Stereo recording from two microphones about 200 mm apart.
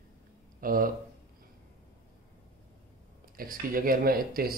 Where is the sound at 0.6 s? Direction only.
45° right (ahead or behind).